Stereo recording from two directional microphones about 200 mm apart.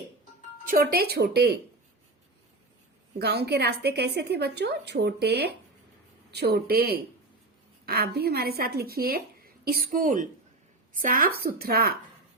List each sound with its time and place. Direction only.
0.6 s a woman's voice: 45° right (ahead or behind)
3.2 s a woman's voice: 55° right (ahead or behind)